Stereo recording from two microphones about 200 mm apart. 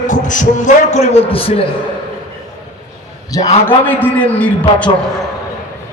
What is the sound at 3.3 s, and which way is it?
A man's voice, 15° left (ahead or behind).